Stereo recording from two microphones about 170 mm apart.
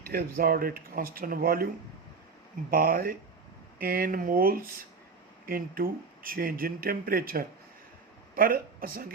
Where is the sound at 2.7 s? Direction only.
60° right (ahead or behind).